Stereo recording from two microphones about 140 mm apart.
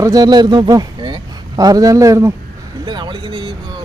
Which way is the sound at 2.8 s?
35° right (ahead or behind).